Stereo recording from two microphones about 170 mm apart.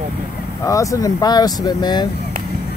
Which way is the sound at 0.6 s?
20° left (ahead or behind).